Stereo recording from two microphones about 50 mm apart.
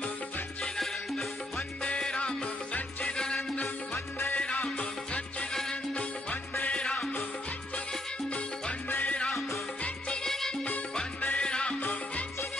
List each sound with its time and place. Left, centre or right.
1.8 s music: centre
5.5 s music: centre
6.6 s music: left
8.8 s music: left
9.1 s music: left
10.2 s music: centre
11.1 s music: left
11.4 s music: centre
11.8 s music: left